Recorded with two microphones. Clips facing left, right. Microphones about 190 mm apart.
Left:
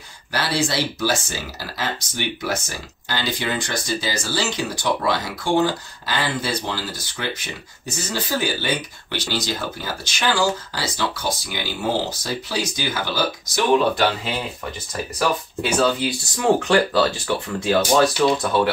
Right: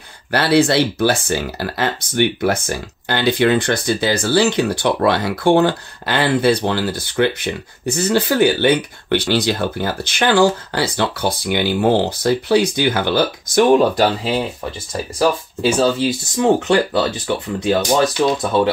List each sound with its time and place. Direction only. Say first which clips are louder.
0.3 s speech: right 9 dB; 60° right (ahead or behind)
13.7 s speech: right 4 dB; 40° right (ahead or behind)
14.9 s speech: right 5 dB; 30° right (ahead or behind)